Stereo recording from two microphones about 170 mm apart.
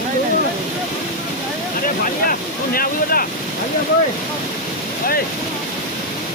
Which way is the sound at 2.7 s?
60° left (ahead or behind).